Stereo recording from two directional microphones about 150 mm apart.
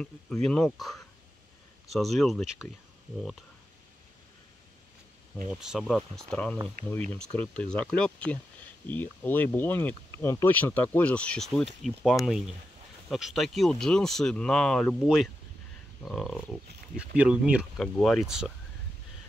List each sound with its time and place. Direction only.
0.0 s speech: 5° left (ahead or behind)
5.5 s speech: 5° right (ahead or behind)